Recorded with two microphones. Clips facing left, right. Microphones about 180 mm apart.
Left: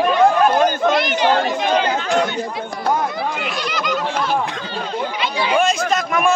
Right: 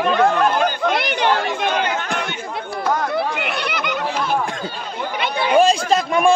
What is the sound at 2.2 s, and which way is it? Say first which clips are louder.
Chatter: left 7 dB; 35° left (ahead or behind).